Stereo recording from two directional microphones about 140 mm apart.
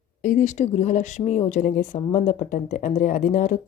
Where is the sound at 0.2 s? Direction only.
65° left (ahead or behind).